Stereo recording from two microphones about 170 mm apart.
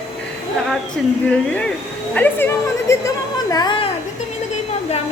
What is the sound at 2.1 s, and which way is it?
Speech, 10° left (ahead or behind).